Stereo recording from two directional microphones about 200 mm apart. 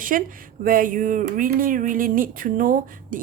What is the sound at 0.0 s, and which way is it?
Speech, 45° right (ahead or behind).